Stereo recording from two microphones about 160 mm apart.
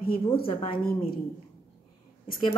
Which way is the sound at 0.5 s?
35° left (ahead or behind).